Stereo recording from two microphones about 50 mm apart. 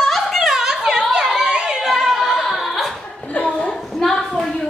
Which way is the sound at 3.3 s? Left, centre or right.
Left.